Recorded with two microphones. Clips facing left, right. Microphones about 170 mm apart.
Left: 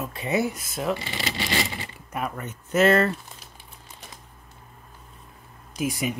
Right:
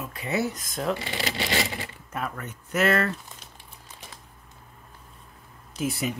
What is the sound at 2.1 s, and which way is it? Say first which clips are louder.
Speech: left 3 dB; 15° left (ahead or behind).